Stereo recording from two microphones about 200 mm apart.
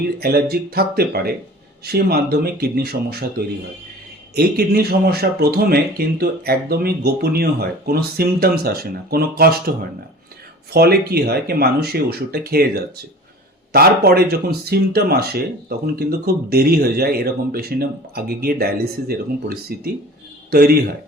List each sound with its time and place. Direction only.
0.2 s speech: 50° right (ahead or behind)
4.4 s speech: 50° right (ahead or behind)